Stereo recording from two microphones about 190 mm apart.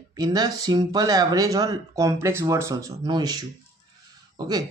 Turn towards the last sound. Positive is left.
turn(degrees=-20)  # may be behind; listen again after turning